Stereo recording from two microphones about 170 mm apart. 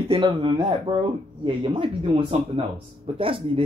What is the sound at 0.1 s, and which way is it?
A man's voice, 30° right (ahead or behind).